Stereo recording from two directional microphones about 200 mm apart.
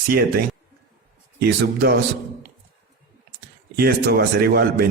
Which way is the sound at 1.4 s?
50° right (ahead or behind).